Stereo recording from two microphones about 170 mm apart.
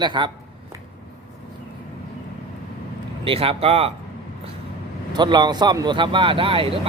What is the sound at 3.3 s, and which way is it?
Speech, 35° right (ahead or behind).